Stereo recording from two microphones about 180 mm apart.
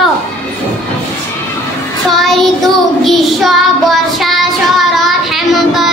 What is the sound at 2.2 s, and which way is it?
Child singing, centre (ahead or behind).